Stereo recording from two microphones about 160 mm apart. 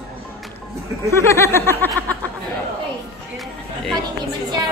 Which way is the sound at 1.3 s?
15° left (ahead or behind).